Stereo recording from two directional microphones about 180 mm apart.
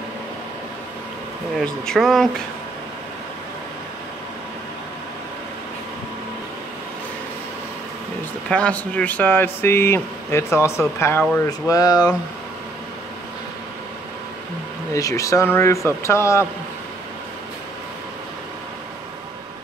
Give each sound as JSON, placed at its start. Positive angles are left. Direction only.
{"t": 1.6, "sound": "speech", "side_deg": 0}
{"t": 8.5, "sound": "speech", "side_deg": 5}
{"t": 15.0, "sound": "speech", "side_deg": 20}